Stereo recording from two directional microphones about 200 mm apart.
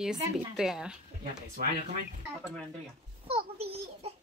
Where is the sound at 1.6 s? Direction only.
45° right (ahead or behind).